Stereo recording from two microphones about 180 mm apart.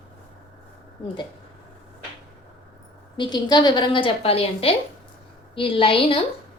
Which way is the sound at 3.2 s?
25° left (ahead or behind).